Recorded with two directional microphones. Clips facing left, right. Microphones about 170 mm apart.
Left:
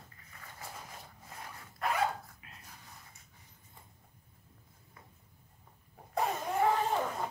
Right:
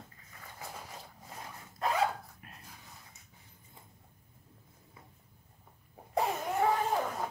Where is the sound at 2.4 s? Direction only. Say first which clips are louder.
Right 3 dB; 50° right (ahead or behind).